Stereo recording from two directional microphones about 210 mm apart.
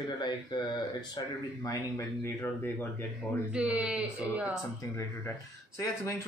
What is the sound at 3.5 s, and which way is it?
Speech, 5° right (ahead or behind).